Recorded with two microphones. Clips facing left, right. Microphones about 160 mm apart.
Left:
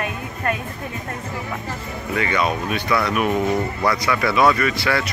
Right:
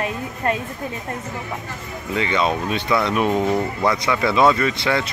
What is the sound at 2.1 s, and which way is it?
Speech, 25° right (ahead or behind).